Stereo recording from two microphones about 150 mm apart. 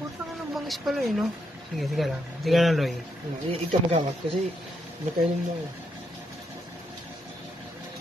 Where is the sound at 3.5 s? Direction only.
40° right (ahead or behind).